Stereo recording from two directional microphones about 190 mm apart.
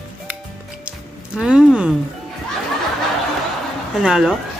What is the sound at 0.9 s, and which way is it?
Music, 5° right (ahead or behind).